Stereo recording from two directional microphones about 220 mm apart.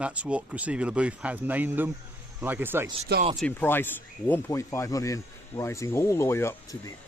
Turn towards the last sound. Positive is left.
turn(degrees=15)  # may be behind; listen again after turning